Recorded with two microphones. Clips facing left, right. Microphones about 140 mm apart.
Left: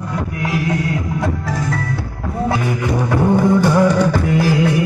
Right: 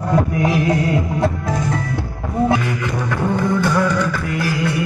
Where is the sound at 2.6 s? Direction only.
20° left (ahead or behind).